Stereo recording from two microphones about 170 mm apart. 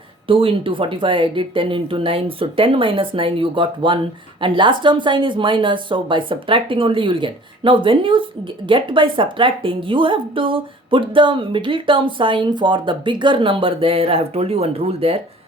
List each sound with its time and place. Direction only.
0.3 s speech: 30° right (ahead or behind)